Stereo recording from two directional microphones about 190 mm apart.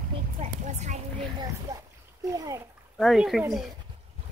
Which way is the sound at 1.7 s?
20° right (ahead or behind).